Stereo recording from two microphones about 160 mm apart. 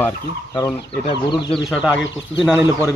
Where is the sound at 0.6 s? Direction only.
25° left (ahead or behind).